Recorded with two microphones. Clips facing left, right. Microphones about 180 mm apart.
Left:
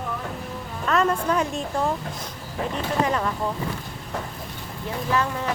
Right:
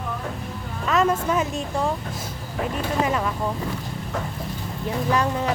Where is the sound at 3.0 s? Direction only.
10° right (ahead or behind).